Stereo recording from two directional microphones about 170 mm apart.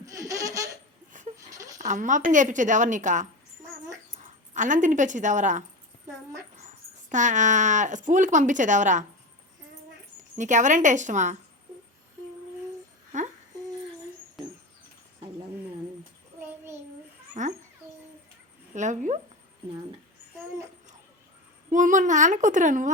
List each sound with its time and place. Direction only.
0.0 s baby laughter: 20° right (ahead or behind)
1.4 s sheep: 20° right (ahead or behind)
1.8 s speech: 45° right (ahead or behind)
7.1 s speech: 45° right (ahead or behind)
10.3 s speech: 45° right (ahead or behind)
17.4 s bird: 45° right (ahead or behind)
18.7 s a sound: 45° right (ahead or behind)
21.7 s speech: 50° right (ahead or behind)